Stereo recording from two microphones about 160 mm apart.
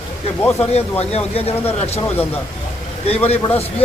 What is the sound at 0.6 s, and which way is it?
A man's voice, 40° left (ahead or behind).